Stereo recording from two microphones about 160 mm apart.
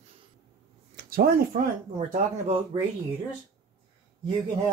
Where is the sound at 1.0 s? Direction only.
65° right (ahead or behind).